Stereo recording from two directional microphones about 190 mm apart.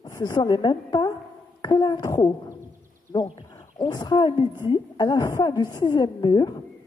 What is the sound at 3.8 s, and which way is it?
A woman's voice, 20° left (ahead or behind).